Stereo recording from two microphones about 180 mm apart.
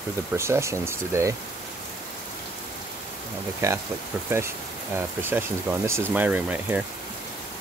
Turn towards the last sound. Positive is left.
turn(degrees=-10)  # may be behind; listen again after turning